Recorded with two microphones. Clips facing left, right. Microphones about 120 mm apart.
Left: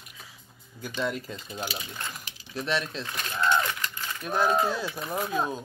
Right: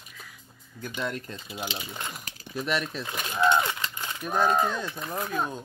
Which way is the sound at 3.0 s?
15° right (ahead or behind).